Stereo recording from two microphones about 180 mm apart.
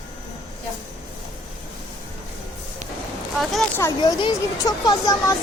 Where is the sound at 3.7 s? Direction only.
15° left (ahead or behind).